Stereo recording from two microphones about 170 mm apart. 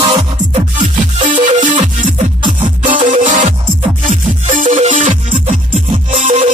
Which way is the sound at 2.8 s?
50° right (ahead or behind).